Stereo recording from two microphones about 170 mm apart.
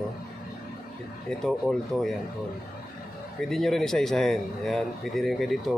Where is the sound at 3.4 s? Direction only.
Centre (ahead or behind).